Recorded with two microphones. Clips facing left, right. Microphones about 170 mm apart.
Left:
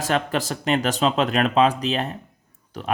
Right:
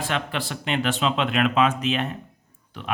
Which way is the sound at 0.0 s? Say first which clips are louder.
Left 5 dB; 40° left (ahead or behind).